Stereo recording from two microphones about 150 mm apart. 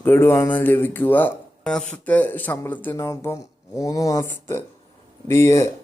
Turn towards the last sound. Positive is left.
turn(degrees=20)  # may be behind; listen again after turning